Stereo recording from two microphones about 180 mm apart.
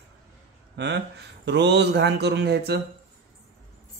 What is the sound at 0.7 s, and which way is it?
A man's voice, 70° right (ahead or behind).